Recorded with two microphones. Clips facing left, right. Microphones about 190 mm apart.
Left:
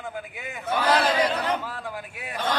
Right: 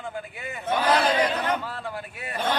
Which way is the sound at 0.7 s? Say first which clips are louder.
Even; 10° right (ahead or behind).